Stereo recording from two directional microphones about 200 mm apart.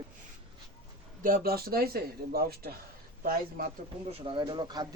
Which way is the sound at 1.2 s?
45° right (ahead or behind).